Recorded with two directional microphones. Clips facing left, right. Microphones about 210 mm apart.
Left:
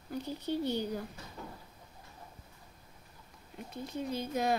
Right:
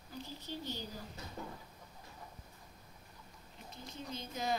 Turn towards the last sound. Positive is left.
turn(degrees=60)  # may be behind; listen again after turning